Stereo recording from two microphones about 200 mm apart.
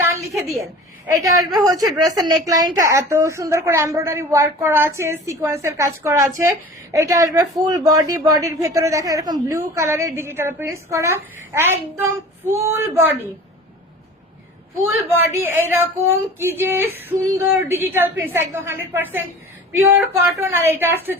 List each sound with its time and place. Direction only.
1.5 s female singing: 15° right (ahead or behind)
14.8 s female singing: 10° right (ahead or behind)